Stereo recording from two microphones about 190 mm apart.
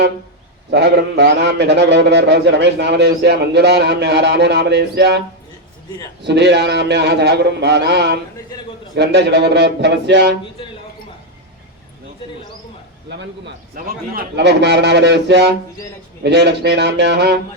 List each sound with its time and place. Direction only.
0.7 s a man's voice: 60° right (ahead or behind)
6.2 s a man's voice: 65° right (ahead or behind)
13.1 s a man's voice: 65° right (ahead or behind)